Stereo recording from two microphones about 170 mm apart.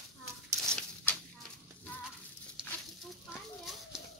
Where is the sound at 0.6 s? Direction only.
5° left (ahead or behind).